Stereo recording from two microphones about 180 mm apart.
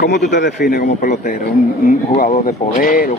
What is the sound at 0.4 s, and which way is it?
Speech, 65° left (ahead or behind).